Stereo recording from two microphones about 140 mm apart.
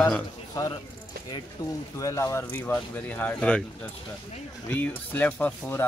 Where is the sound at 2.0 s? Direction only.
20° left (ahead or behind).